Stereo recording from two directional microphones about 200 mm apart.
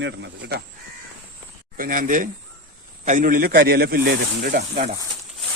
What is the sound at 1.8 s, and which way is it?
Speech, 40° right (ahead or behind).